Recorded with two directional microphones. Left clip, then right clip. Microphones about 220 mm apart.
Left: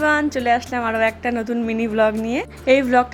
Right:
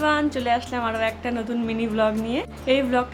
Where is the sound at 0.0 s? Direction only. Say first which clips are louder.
Left 4 dB; 20° left (ahead or behind).